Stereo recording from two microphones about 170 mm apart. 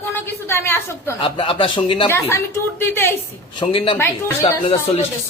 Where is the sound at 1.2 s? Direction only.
30° left (ahead or behind).